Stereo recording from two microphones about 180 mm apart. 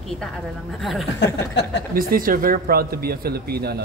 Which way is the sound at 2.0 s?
50° right (ahead or behind).